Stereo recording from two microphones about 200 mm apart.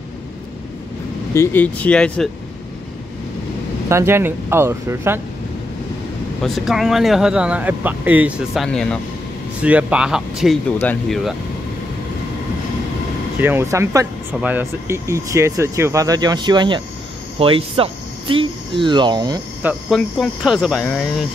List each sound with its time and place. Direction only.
1.3 s speech: 10° left (ahead or behind)
3.9 s speech: 10° right (ahead or behind)
6.4 s speech: centre (ahead or behind)
8.6 s speech: 5° left (ahead or behind)
9.6 s speech: 5° right (ahead or behind)
13.4 s speech: 10° right (ahead or behind)
19.9 s speech: centre (ahead or behind)